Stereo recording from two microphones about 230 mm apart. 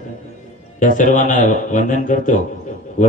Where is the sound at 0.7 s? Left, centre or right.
Left.